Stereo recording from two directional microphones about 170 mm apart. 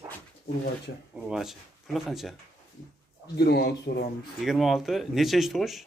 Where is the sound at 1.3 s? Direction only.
Centre (ahead or behind).